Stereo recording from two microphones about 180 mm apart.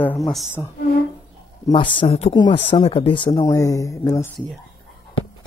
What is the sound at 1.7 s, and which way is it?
Speech, 25° left (ahead or behind).